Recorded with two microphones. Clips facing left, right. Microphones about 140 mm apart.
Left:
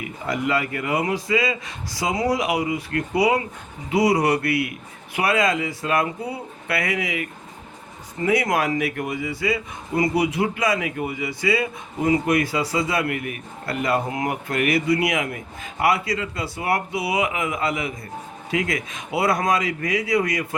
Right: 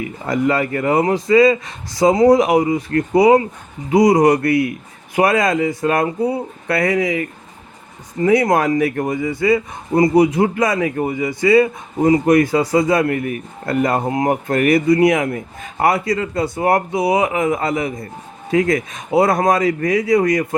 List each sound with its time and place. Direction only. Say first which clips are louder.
0.3 s a man's voice: right 6 dB; 40° right (ahead or behind)
11.9 s a man's voice: right 7 dB; 35° right (ahead or behind)